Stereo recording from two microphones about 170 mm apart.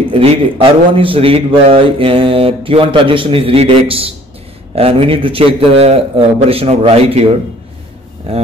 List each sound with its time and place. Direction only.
0.1 s a man's voice: 35° right (ahead or behind)
8.3 s a man's voice: 35° right (ahead or behind)